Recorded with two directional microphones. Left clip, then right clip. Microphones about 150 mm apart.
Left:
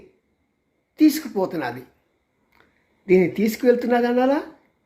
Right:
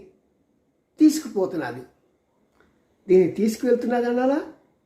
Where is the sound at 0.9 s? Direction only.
15° left (ahead or behind).